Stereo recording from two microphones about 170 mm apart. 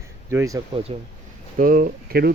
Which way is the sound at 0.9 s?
30° right (ahead or behind).